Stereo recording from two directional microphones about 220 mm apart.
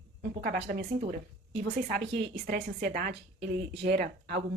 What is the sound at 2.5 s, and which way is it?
A woman's voice, 40° right (ahead or behind).